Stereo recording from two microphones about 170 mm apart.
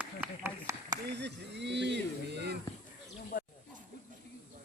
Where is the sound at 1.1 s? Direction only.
90° right.